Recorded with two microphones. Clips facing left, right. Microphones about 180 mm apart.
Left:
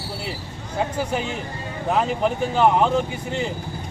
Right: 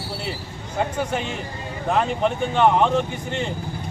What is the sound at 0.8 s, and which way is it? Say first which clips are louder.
Speech: even; 5° left (ahead or behind).